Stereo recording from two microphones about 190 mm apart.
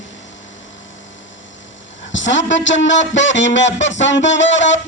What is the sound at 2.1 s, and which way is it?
Speech, 75° left (ahead or behind).